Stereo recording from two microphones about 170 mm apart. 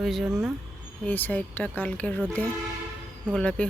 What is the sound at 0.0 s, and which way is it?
Speech, centre (ahead or behind).